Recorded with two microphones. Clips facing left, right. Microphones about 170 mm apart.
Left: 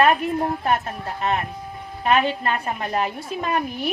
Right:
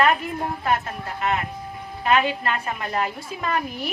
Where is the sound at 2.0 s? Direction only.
25° left (ahead or behind).